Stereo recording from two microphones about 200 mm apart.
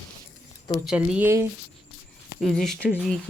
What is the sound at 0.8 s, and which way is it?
Speech, 5° right (ahead or behind).